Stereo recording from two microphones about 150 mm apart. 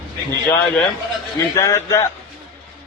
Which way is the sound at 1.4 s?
20° left (ahead or behind).